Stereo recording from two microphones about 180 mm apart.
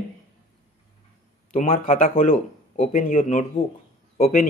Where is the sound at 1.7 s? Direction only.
50° left (ahead or behind).